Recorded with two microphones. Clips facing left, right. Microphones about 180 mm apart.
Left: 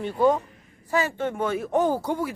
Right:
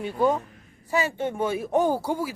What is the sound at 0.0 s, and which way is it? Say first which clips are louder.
Speech: left 2 dB; 10° right (ahead or behind).